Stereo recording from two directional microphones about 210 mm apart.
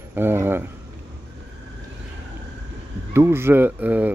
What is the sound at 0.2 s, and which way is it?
Speech, 10° right (ahead or behind).